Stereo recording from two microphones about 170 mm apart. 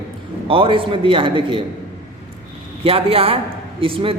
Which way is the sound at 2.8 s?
35° right (ahead or behind).